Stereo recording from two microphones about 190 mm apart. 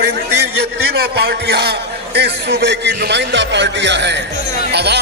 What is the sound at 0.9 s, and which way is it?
A man's voice, 60° right (ahead or behind).